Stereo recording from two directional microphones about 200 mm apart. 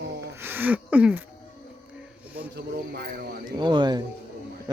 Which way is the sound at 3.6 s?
20° right (ahead or behind).